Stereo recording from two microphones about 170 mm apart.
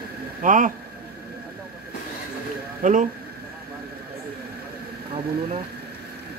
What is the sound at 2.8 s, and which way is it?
Speech, 45° right (ahead or behind).